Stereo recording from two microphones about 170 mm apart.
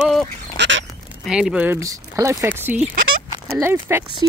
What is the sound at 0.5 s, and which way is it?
Duck, 90° right.